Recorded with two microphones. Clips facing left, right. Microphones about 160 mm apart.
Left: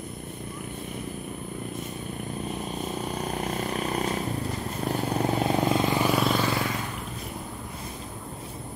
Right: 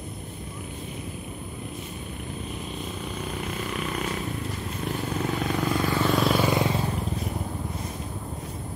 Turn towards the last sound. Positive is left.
turn(degrees=-25)  # may be behind; listen again after turning